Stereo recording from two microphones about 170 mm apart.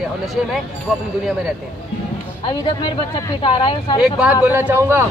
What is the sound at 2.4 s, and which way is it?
Speech, 30° left (ahead or behind).